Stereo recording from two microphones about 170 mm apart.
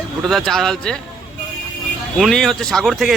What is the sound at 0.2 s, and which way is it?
Speech, centre (ahead or behind).